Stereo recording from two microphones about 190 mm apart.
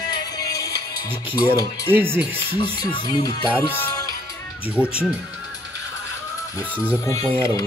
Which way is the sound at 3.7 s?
15° left (ahead or behind).